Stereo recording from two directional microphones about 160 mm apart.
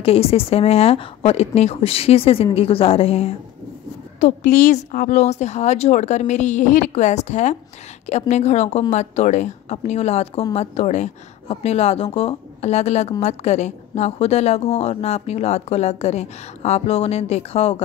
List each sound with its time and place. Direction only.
0.0 s speech: 40° left (ahead or behind)
4.2 s a woman's voice: 55° left (ahead or behind)